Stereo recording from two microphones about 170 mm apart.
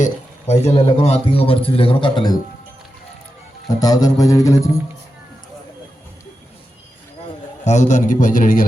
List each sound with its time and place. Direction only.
0.0 s a man's voice: 40° left (ahead or behind)
3.7 s music: 20° left (ahead or behind)
7.6 s a man's voice: 45° left (ahead or behind)